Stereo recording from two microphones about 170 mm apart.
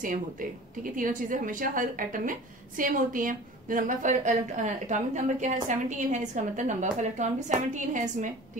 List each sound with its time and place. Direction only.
0.9 s a woman's voice: 50° right (ahead or behind)